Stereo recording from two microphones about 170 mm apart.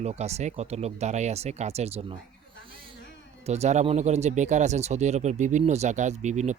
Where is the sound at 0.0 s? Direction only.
40° right (ahead or behind).